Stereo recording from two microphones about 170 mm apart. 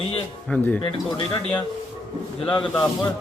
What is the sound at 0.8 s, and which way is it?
Speech, 30° left (ahead or behind).